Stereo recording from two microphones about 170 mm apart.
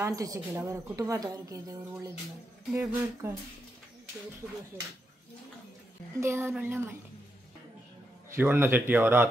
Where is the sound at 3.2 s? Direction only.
15° right (ahead or behind).